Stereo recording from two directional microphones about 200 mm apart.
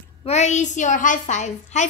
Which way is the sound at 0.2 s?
35° left (ahead or behind).